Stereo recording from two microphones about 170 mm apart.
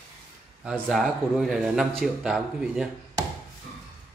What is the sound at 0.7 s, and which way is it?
A man's voice, centre (ahead or behind).